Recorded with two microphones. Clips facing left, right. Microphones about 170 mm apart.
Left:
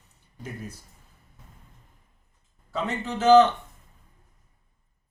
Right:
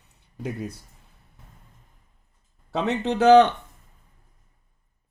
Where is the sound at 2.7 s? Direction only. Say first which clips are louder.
Right 6 dB; 70° right (ahead or behind).